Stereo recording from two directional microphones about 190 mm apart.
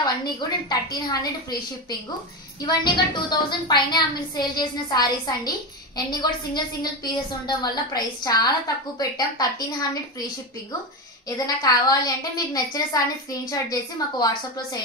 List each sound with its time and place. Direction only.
0.0 s a woman's voice: 20° left (ahead or behind)
11.2 s a woman's voice: 20° left (ahead or behind)